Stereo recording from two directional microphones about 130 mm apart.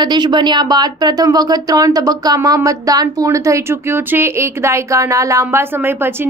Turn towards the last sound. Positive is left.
turn(degrees=-15)  # may be behind; listen again after turning